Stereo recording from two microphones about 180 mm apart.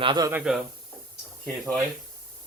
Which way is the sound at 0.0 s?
25° right (ahead or behind).